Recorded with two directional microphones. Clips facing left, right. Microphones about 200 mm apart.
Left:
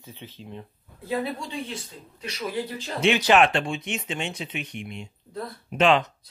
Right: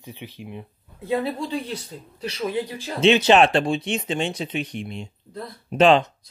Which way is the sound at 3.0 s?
25° right (ahead or behind).